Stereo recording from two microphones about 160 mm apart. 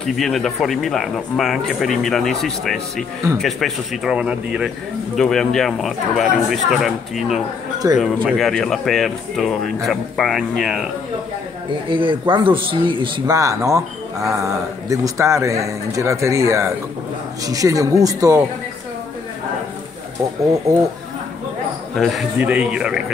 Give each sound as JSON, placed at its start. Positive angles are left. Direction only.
{"t": 0.0, "sound": "a man's voice", "side_deg": 0}
{"t": 7.8, "sound": "speech", "side_deg": -20}
{"t": 8.3, "sound": "a man's voice", "side_deg": 0}
{"t": 11.9, "sound": "speech", "side_deg": -30}
{"t": 13.4, "sound": "speech", "side_deg": -20}
{"t": 21.9, "sound": "a man's voice", "side_deg": 0}